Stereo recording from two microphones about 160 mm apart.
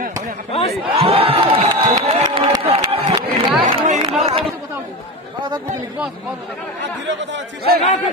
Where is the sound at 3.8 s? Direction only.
50° right (ahead or behind).